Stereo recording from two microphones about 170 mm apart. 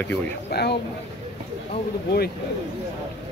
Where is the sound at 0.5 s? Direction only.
70° left (ahead or behind).